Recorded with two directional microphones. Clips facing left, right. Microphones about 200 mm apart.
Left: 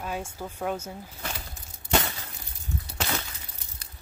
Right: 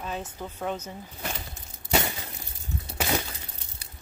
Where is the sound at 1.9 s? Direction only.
15° right (ahead or behind).